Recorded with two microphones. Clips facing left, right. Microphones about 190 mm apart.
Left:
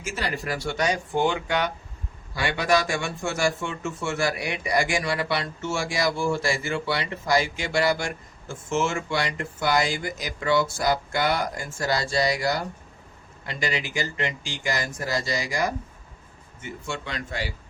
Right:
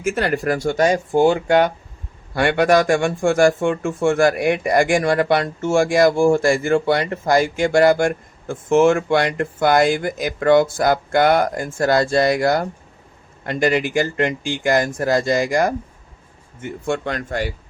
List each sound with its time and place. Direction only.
0.0 s speech: 55° right (ahead or behind)
2.3 s speech: 55° right (ahead or behind)